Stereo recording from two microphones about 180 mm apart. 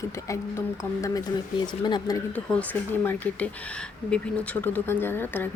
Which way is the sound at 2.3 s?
10° left (ahead or behind).